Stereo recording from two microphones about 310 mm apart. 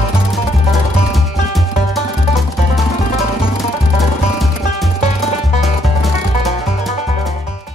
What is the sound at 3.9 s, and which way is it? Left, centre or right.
Music, centre.